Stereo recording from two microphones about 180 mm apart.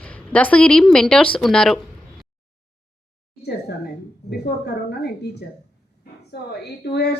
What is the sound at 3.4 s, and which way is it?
A woman's voice, 65° left (ahead or behind).